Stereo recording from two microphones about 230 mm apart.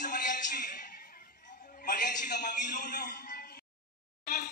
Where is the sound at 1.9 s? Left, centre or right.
Left.